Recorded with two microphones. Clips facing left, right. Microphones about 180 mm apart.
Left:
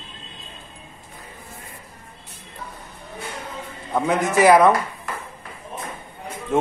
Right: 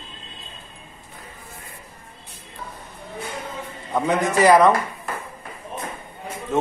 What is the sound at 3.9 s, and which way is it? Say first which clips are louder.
Speech: even; 5° left (ahead or behind).